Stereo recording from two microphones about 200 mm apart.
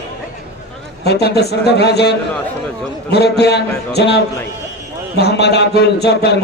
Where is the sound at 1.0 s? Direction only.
55° left (ahead or behind).